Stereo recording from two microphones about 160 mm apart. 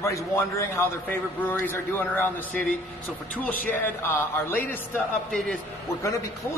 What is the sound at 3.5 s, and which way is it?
Speech, 60° left (ahead or behind).